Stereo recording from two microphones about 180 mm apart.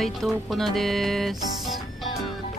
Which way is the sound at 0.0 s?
Centre (ahead or behind).